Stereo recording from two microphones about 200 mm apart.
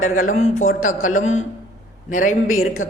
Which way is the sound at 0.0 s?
40° left (ahead or behind).